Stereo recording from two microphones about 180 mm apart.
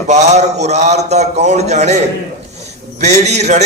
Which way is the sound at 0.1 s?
40° right (ahead or behind).